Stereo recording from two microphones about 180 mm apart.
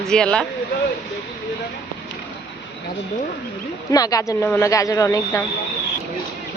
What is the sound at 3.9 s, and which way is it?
A woman's voice, 20° left (ahead or behind).